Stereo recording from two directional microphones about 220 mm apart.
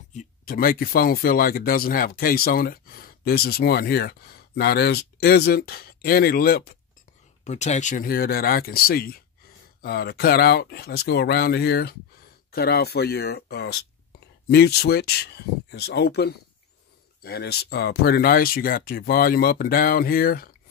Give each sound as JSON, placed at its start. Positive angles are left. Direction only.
{"t": 0.1, "sound": "speech", "side_deg": 35}
{"t": 7.4, "sound": "speech", "side_deg": 30}